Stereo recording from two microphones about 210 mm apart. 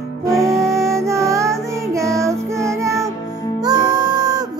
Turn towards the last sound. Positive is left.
turn(degrees=-15)  # may be behind; listen again after turning